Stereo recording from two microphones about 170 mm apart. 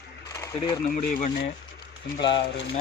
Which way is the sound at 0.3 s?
20° left (ahead or behind).